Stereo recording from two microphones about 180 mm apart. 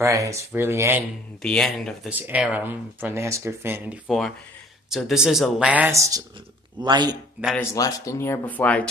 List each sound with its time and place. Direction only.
0.0 s speech: 15° right (ahead or behind)
1.4 s speech: 5° left (ahead or behind)
2.0 s speech: 10° right (ahead or behind)
7.7 s speech: 20° left (ahead or behind)